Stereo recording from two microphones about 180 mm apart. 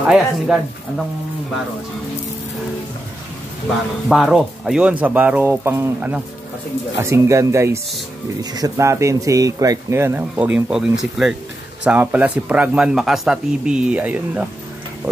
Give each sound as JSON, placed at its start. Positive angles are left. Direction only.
{"t": 0.0, "sound": "speech", "side_deg": -5}
{"t": 4.1, "sound": "speech", "side_deg": 0}